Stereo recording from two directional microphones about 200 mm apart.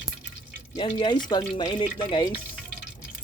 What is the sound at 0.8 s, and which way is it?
Speech, 25° left (ahead or behind).